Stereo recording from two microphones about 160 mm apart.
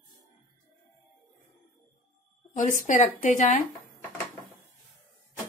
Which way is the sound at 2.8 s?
60° left (ahead or behind).